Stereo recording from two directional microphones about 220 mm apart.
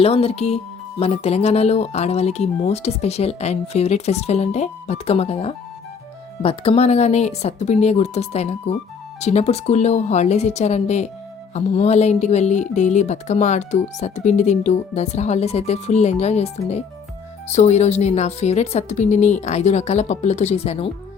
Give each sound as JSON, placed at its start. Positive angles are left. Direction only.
{"t": 0.0, "sound": "speech", "side_deg": 25}